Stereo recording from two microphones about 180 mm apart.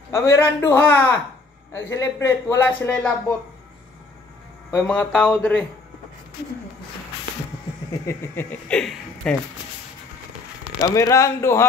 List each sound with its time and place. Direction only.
0.1 s a man's voice: 15° left (ahead or behind)
4.6 s a man's voice: 10° left (ahead or behind)
8.1 s a man's voice: 10° left (ahead or behind)
10.8 s a man's voice: 15° left (ahead or behind)